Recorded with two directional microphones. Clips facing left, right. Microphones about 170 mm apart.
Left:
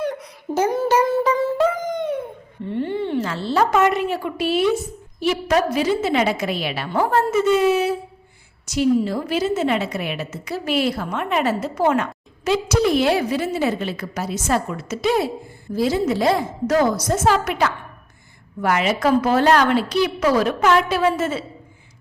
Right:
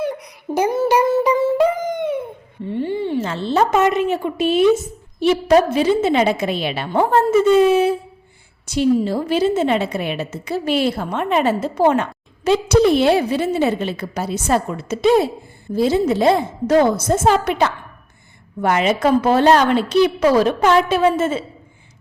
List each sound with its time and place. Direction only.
0.0 s humming: 10° right (ahead or behind)
2.6 s a woman's voice: 10° right (ahead or behind)